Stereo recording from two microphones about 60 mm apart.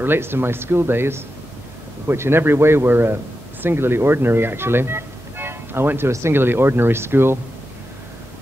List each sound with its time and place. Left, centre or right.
0.0 s speech: right